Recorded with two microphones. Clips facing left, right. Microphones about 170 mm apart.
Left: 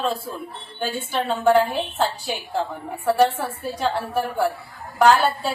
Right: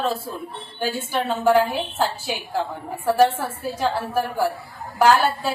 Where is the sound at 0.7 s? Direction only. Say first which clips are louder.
Right 1 dB; 10° right (ahead or behind).